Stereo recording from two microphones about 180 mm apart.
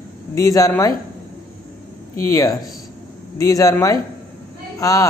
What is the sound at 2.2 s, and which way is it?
Speech, 15° left (ahead or behind).